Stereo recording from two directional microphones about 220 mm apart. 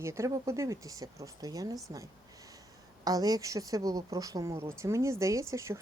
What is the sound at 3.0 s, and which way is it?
Speech, 15° right (ahead or behind).